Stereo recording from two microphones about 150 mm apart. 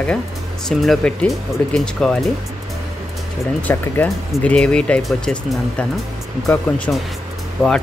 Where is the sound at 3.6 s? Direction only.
10° left (ahead or behind).